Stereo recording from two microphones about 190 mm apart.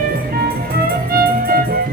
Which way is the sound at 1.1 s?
50° right (ahead or behind).